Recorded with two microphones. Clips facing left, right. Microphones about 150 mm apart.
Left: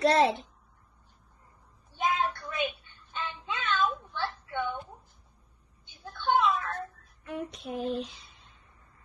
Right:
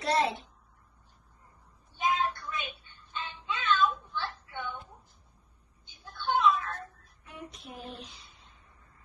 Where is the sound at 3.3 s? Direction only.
50° left (ahead or behind).